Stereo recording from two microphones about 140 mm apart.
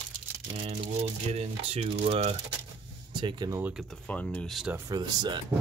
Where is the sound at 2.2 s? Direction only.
55° right (ahead or behind).